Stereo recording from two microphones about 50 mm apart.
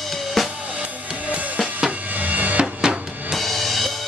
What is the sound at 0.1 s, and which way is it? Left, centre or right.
Drum kit, centre.